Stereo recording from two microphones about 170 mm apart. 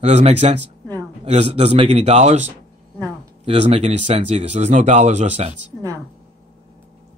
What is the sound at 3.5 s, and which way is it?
Speech, 35° right (ahead or behind).